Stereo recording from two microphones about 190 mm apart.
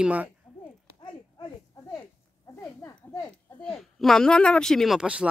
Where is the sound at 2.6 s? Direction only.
15° left (ahead or behind).